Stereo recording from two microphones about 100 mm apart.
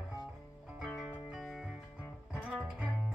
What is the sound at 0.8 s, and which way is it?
Music, centre (ahead or behind).